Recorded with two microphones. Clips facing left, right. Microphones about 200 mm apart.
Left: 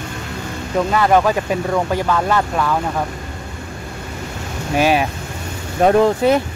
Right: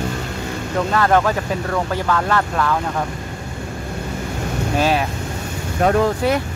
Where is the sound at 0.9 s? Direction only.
10° left (ahead or behind).